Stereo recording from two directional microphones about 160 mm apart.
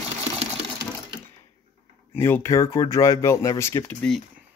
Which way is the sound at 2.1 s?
15° left (ahead or behind).